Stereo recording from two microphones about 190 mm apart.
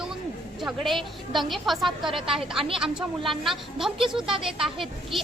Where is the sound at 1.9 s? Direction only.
25° right (ahead or behind).